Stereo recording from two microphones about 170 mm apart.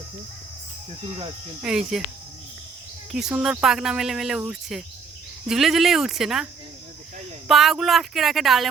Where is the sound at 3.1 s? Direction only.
5° right (ahead or behind).